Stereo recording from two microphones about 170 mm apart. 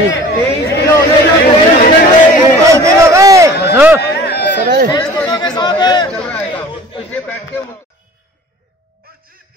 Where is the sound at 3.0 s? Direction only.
20° right (ahead or behind).